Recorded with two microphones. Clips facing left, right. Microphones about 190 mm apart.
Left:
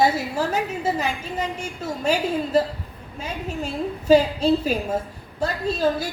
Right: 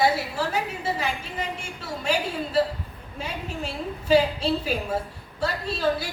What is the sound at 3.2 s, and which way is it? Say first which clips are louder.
A woman's voice: left 3 dB; 45° left (ahead or behind).